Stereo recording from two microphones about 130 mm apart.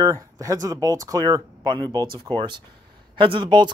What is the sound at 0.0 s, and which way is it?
Speech, 25° right (ahead or behind).